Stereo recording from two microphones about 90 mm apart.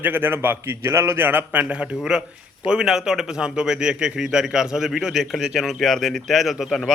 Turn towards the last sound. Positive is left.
turn(degrees=0)  # may be behind; listen again after turning